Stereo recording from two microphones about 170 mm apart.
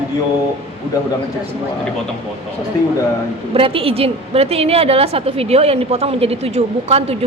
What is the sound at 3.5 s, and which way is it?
A woman's voice, 35° right (ahead or behind).